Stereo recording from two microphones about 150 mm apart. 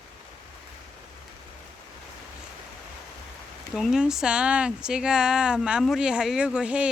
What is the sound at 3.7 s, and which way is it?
Speech, centre (ahead or behind).